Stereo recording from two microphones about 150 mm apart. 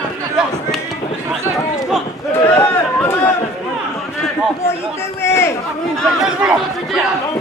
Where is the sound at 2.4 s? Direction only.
15° left (ahead or behind).